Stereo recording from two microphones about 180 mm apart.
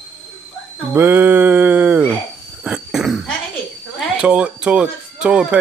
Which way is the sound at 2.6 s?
5° right (ahead or behind).